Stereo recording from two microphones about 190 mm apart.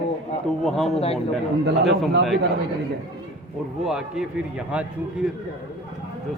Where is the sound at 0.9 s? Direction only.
30° left (ahead or behind).